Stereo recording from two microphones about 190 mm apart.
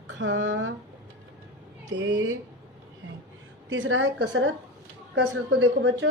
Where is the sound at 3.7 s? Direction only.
90° right; by 6.1 s 70° right (ahead or behind).